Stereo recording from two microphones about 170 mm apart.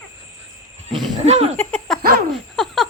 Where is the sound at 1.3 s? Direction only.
40° right (ahead or behind).